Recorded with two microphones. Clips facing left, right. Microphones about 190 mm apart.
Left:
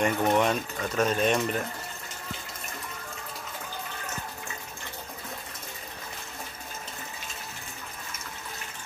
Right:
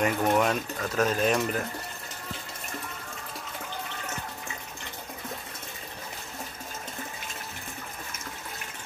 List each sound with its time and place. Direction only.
0.0 s speech: centre (ahead or behind)